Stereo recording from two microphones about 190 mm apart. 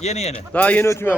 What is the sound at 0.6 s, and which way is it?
Speech, 10° left (ahead or behind).